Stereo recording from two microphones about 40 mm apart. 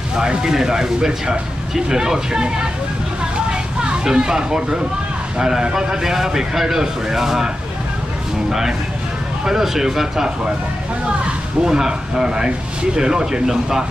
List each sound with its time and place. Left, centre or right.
0.1 s speech: centre
3.8 s speech: right
11.6 s speech: centre